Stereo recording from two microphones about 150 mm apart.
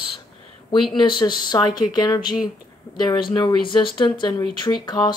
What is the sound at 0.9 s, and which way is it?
Speech, 30° left (ahead or behind).